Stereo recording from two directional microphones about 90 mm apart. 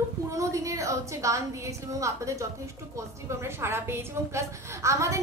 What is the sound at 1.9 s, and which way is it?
A woman's voice, 35° right (ahead or behind).